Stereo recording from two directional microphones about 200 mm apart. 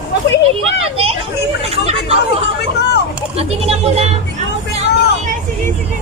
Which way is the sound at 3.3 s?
30° right (ahead or behind).